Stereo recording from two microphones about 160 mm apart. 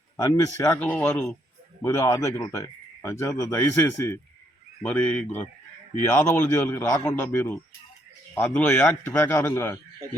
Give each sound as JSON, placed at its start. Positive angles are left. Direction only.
{"t": 0.2, "sound": "a man's voice", "side_deg": 20}
{"t": 1.8, "sound": "a man's voice", "side_deg": 20}